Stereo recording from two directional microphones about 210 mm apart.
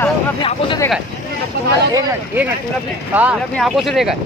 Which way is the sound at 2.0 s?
10° right (ahead or behind).